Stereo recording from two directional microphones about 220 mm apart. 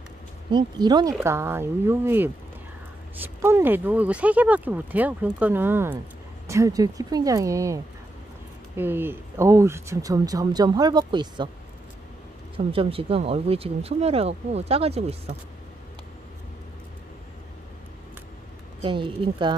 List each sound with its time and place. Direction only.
0.5 s speech: 20° right (ahead or behind)
12.5 s speech: 25° right (ahead or behind)
18.8 s speech: 25° right (ahead or behind)